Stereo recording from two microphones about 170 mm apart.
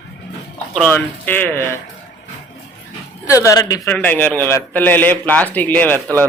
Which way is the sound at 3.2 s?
20° left (ahead or behind).